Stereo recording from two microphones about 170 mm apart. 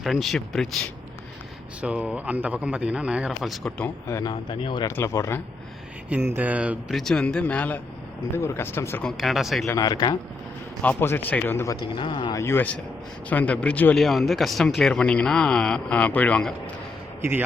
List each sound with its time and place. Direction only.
0.0 s speech: centre (ahead or behind)
1.8 s a man's voice: 5° right (ahead or behind)
3.8 s speech: 20° left (ahead or behind)
6.1 s speech: 10° right (ahead or behind); by 9.0 s 15° left (ahead or behind)
9.0 s speech: centre (ahead or behind)
9.6 s speech: 20° left (ahead or behind)
10.8 s speech: 10° left (ahead or behind); by 12.4 s 25° left (ahead or behind)
12.4 s speech: 15° left (ahead or behind)
17.2 s a man's voice: 15° right (ahead or behind)